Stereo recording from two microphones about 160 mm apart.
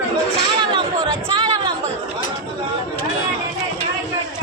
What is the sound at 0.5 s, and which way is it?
Chatter, 30° right (ahead or behind).